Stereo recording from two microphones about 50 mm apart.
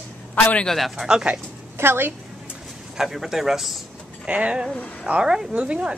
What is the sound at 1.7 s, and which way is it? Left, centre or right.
Speech, right.